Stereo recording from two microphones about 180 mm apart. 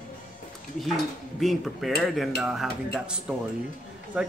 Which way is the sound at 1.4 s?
Centre (ahead or behind).